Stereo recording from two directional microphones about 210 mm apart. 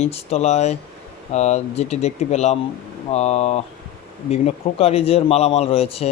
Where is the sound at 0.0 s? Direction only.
30° left (ahead or behind).